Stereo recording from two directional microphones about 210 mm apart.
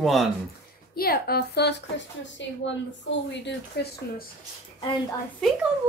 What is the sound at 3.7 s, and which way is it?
Speech, 50° left (ahead or behind).